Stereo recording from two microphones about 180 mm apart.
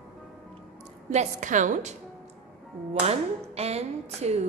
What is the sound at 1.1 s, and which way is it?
Speech, 40° right (ahead or behind).